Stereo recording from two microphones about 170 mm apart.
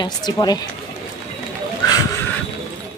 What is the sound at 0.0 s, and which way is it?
Speech, 25° left (ahead or behind).